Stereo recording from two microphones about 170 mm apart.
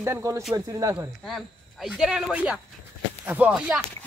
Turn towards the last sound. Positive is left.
turn(degrees=-5)  # may be behind; listen again after turning